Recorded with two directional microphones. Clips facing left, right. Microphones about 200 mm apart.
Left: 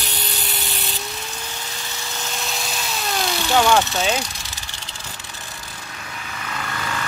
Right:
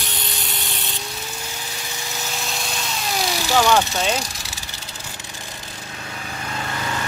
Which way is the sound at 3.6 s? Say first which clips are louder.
Even; 5° right (ahead or behind).